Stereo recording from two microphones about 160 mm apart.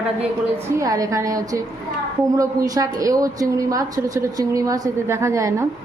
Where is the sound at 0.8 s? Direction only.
20° right (ahead or behind).